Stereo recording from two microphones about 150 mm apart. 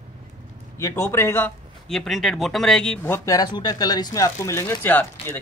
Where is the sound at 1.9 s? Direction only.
Centre (ahead or behind).